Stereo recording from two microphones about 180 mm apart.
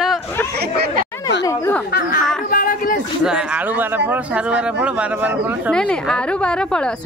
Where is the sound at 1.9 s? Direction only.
60° left (ahead or behind).